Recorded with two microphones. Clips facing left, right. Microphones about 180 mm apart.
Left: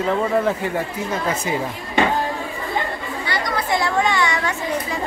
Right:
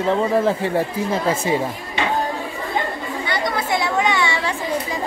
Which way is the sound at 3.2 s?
20° right (ahead or behind).